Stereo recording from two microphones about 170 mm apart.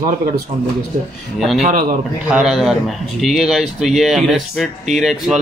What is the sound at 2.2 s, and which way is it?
Speech, 5° right (ahead or behind).